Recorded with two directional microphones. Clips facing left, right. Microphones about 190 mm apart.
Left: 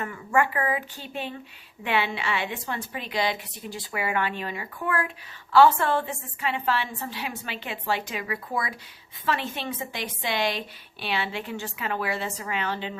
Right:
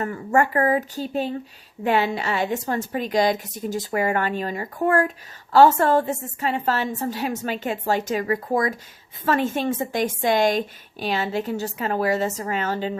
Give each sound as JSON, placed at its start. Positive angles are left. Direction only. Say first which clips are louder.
{"t": 0.0, "sound": "a woman's voice", "louder": "right 4 dB", "side_deg": -40}